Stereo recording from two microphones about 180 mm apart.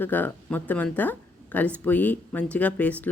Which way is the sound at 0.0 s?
10° left (ahead or behind).